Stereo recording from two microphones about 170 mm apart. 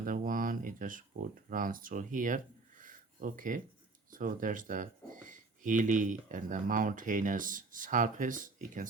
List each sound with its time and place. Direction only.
0.0 s speech: 55° right (ahead or behind)